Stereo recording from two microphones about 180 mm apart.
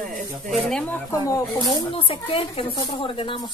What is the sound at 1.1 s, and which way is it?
Speech, 20° left (ahead or behind).